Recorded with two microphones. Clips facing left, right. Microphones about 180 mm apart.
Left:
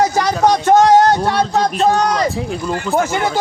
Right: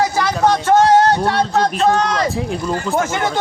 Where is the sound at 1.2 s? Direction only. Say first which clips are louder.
Even; centre (ahead or behind).